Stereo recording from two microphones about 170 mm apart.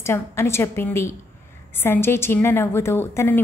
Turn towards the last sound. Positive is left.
turn(degrees=15)  # may be behind; listen again after turning